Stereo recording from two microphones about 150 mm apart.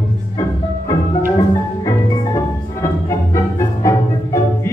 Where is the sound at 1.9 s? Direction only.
20° left (ahead or behind).